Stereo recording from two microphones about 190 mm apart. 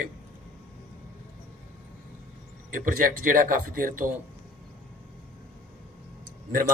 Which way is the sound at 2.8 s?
45° right (ahead or behind).